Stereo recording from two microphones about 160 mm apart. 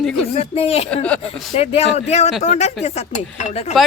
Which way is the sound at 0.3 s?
40° left (ahead or behind).